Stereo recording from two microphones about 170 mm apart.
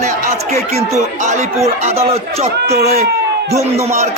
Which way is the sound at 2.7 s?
65° right (ahead or behind).